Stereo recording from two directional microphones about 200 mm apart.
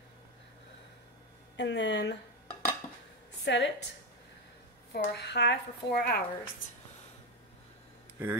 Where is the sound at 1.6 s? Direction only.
60° left (ahead or behind).